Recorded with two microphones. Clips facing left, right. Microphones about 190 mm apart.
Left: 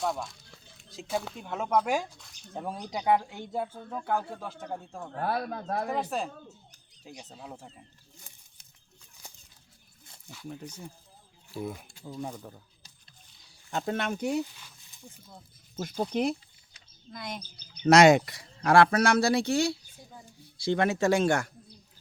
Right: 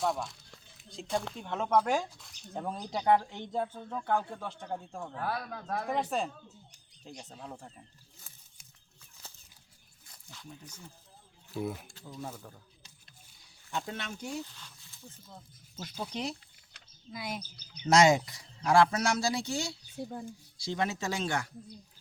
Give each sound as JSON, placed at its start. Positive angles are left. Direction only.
{"t": 0.0, "sound": "speech", "side_deg": 0}
{"t": 5.1, "sound": "speech", "side_deg": 40}
{"t": 5.9, "sound": "speech", "side_deg": 0}
{"t": 9.2, "sound": "a sound", "side_deg": 15}
{"t": 11.5, "sound": "speech", "side_deg": 0}
{"t": 12.4, "sound": "speech", "side_deg": 15}
{"t": 13.8, "sound": "speech", "side_deg": 55}
{"t": 14.4, "sound": "speech", "side_deg": 10}
{"t": 15.7, "sound": "speech", "side_deg": 50}
{"t": 17.1, "sound": "speech", "side_deg": -5}
{"t": 17.8, "sound": "speech", "side_deg": 65}
{"t": 20.0, "sound": "speech", "side_deg": -55}
{"t": 20.7, "sound": "speech", "side_deg": 60}